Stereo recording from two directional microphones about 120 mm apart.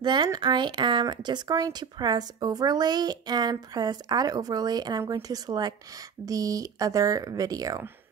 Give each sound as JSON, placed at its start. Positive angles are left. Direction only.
{"t": 0.0, "sound": "speech", "side_deg": -40}